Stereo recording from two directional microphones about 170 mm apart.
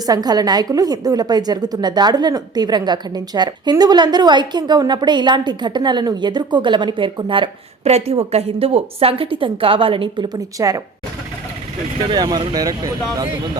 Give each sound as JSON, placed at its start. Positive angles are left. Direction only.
{"t": 0.0, "sound": "a woman's voice", "side_deg": -20}
{"t": 12.0, "sound": "a woman's voice", "side_deg": -25}